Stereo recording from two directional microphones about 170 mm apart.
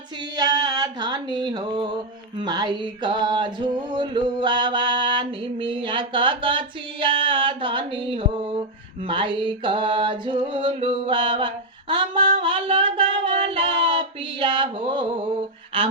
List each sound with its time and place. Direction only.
0.3 s music: 25° right (ahead or behind)
2.4 s a sound: 25° right (ahead or behind)
12.4 s female singing: 30° right (ahead or behind)
15.7 s speech: 30° right (ahead or behind)